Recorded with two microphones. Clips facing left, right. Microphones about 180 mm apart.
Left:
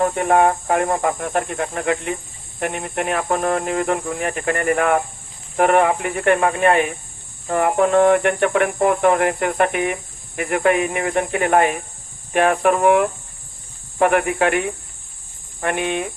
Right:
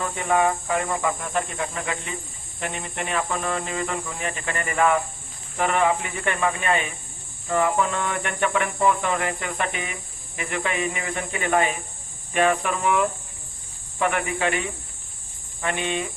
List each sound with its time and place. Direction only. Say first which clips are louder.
0.0 s speech: left 6 dB; 55° left (ahead or behind)